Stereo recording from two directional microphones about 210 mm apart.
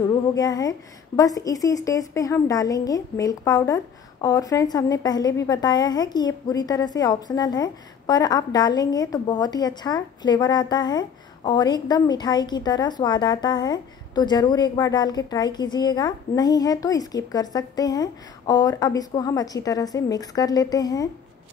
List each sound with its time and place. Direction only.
0.3 s a woman's voice: 15° left (ahead or behind)